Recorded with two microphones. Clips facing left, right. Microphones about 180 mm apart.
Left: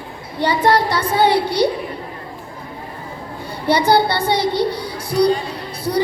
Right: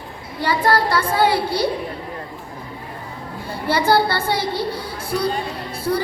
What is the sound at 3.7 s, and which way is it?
Speech, 20° left (ahead or behind).